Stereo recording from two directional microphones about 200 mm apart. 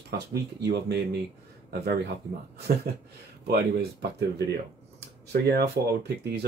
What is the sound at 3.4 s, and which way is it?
Speech, 55° right (ahead or behind).